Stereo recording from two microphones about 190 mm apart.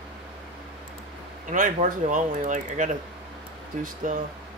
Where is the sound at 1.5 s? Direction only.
45° right (ahead or behind).